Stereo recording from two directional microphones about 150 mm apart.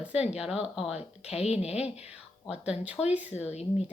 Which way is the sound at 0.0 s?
10° right (ahead or behind).